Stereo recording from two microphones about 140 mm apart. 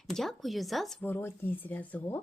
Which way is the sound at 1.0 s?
15° left (ahead or behind).